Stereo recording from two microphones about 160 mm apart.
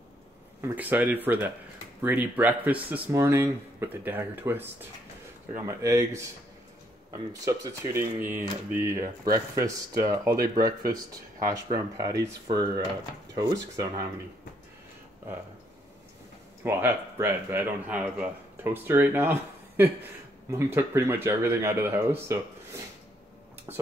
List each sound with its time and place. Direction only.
0.6 s speech: 10° right (ahead or behind)
16.6 s speech: 15° right (ahead or behind)
20.5 s speech: 15° right (ahead or behind)